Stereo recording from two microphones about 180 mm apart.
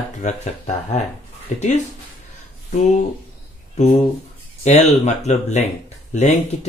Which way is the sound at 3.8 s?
40° left (ahead or behind).